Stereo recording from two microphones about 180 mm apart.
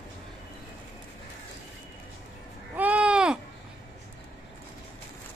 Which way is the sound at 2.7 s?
10° right (ahead or behind).